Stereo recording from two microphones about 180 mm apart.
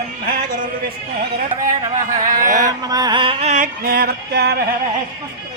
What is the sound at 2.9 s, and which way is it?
Music, 20° right (ahead or behind).